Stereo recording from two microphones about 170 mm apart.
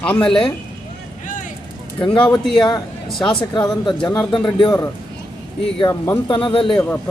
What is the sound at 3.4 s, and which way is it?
Speech, 25° left (ahead or behind).